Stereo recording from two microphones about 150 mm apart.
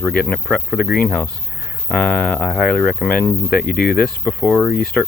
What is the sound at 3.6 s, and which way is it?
Speech, 80° left.